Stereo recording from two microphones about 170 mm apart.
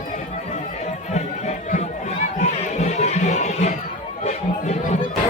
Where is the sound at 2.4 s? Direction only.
45° left (ahead or behind).